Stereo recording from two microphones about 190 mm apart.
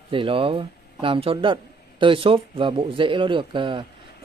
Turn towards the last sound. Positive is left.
turn(degrees=-25)  # may be behind; listen again after turning